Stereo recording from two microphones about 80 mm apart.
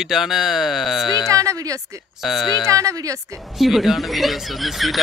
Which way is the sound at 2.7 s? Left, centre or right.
Right.